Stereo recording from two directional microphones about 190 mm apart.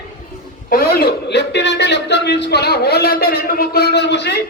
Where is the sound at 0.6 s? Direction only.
50° left (ahead or behind).